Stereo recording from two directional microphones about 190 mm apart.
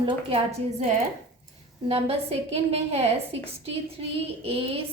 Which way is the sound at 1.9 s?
30° right (ahead or behind).